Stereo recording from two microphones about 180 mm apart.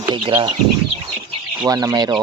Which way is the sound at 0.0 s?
25° right (ahead or behind).